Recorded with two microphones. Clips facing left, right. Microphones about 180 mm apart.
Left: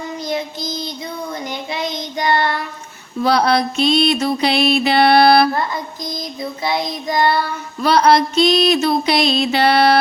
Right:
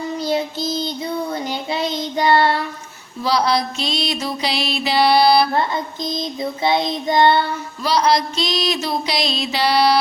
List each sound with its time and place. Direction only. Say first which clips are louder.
0.2 s child singing: right 3 dB; 30° right (ahead or behind)
3.2 s music: left 3 dB; 55° left (ahead or behind)
5.5 s child singing: right 2 dB; 25° right (ahead or behind)
7.8 s music: left 4 dB; 60° left (ahead or behind)